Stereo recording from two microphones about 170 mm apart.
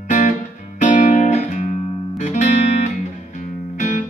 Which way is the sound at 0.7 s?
45° left (ahead or behind).